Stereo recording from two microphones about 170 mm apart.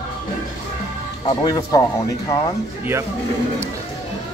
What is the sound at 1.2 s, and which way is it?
Speech, 25° left (ahead or behind).